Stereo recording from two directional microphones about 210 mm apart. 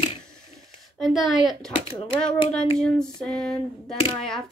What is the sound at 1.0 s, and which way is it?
Speech, centre (ahead or behind).